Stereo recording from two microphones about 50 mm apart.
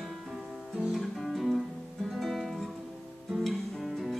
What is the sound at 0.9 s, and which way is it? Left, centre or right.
Music, centre.